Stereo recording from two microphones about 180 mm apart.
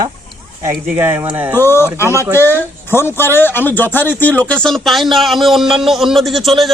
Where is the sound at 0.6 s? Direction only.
15° right (ahead or behind).